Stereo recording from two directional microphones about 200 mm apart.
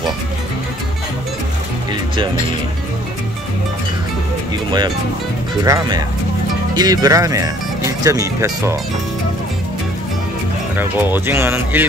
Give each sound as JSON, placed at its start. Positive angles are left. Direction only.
{"t": 5.7, "sound": "speech", "side_deg": -20}
{"t": 10.8, "sound": "speech", "side_deg": -10}